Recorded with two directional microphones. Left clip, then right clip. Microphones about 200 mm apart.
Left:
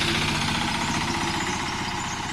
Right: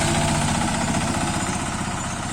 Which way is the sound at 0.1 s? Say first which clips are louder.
Right 2 dB; 65° right (ahead or behind).